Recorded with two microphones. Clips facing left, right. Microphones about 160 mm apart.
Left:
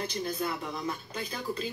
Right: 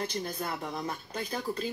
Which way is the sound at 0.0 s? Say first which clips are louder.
Left 2 dB; 50° right (ahead or behind).